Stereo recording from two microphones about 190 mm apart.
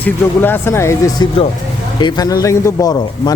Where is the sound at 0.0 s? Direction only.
10° left (ahead or behind).